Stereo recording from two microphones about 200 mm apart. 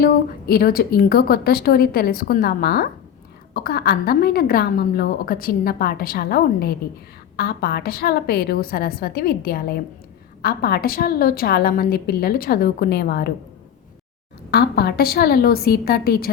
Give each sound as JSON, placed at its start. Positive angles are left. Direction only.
{"t": 0.0, "sound": "a woman's voice", "side_deg": 50}
{"t": 14.5, "sound": "a woman's voice", "side_deg": 55}